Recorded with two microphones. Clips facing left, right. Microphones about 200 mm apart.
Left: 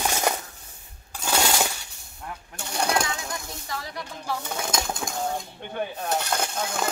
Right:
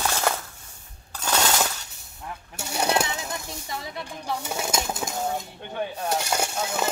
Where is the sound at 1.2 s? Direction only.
10° left (ahead or behind).